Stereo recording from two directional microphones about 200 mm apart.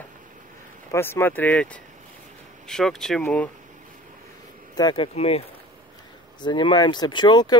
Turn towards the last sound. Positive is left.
turn(degrees=20)  # may be behind; listen again after turning